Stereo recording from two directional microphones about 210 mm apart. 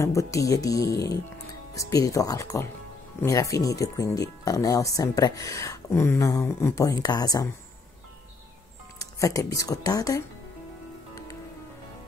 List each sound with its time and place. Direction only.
0.0 s speech: 15° left (ahead or behind)
8.9 s music: 15° left (ahead or behind)
9.7 s speech: 15° left (ahead or behind)